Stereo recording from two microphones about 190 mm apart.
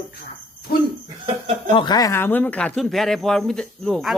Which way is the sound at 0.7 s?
50° left (ahead or behind).